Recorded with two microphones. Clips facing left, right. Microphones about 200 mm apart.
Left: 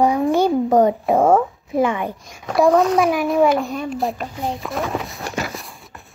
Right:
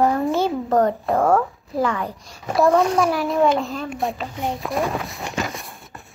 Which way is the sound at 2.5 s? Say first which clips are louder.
Left 2 dB; centre (ahead or behind).